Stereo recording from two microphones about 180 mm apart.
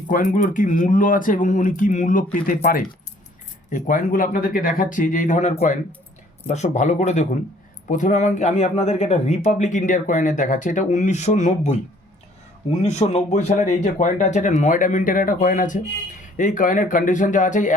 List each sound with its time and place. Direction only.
0.1 s speech: 45° left (ahead or behind)
12.8 s speech: 40° left (ahead or behind)